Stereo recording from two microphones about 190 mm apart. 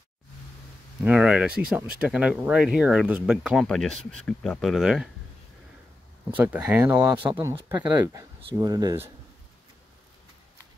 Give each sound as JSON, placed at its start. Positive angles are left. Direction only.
{"t": 1.0, "sound": "speech", "side_deg": -5}
{"t": 6.3, "sound": "speech", "side_deg": -10}